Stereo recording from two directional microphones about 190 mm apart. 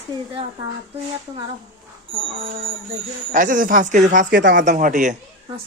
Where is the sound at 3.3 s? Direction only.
45° right (ahead or behind).